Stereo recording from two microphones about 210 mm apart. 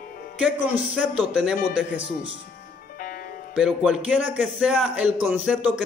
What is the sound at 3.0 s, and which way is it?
Music, 40° left (ahead or behind).